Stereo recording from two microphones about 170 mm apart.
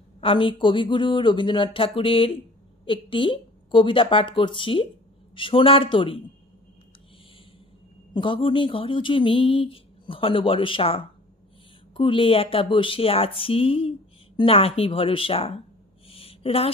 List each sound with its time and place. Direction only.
0.2 s speech: 30° left (ahead or behind)
8.1 s speech: 30° left (ahead or behind)
16.1 s a sound: 35° left (ahead or behind)